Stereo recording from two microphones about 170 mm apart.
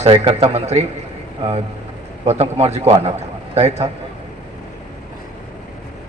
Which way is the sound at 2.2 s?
40° right (ahead or behind).